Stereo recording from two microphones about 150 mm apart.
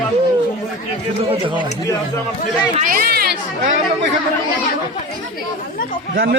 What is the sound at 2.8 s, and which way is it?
Speech, 75° right (ahead or behind).